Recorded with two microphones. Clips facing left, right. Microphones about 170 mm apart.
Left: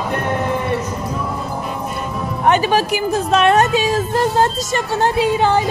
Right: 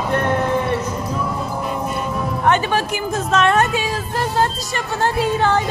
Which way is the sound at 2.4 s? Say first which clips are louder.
Left 4 dB; 15° left (ahead or behind).